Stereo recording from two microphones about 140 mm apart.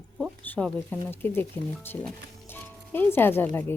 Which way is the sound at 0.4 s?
10° left (ahead or behind).